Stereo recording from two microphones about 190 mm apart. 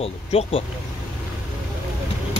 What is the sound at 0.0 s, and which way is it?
Speech, 30° left (ahead or behind).